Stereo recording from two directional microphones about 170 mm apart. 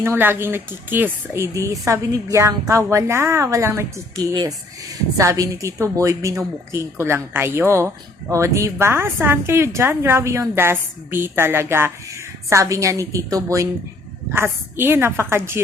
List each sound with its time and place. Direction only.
0.0 s speech: 10° right (ahead or behind)